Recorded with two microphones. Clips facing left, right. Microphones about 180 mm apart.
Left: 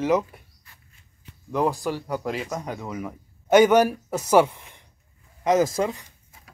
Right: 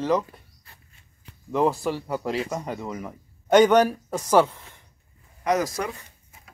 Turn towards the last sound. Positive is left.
turn(degrees=25)  # may be behind; listen again after turning